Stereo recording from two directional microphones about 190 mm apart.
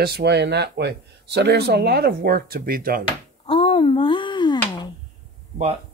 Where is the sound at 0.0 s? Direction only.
60° right (ahead or behind).